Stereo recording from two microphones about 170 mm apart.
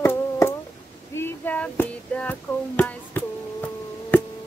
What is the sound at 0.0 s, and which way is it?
Humming, 15° left (ahead or behind).